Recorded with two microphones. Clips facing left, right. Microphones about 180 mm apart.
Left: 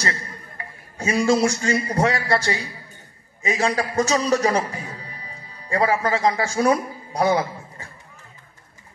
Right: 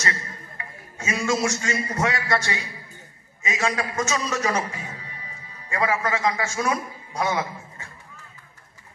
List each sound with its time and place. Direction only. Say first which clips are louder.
0.0 s a man's voice: left 2 dB; 35° left (ahead or behind)